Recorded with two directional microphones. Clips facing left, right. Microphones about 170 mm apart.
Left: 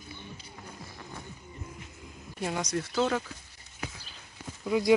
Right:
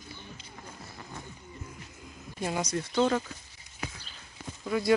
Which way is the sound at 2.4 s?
Centre (ahead or behind).